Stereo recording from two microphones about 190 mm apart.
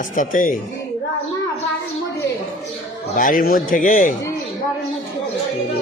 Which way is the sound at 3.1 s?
45° left (ahead or behind).